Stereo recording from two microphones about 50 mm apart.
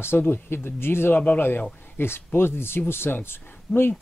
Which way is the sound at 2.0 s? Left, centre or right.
Left.